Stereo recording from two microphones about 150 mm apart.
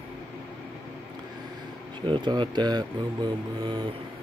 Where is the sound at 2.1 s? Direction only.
30° right (ahead or behind).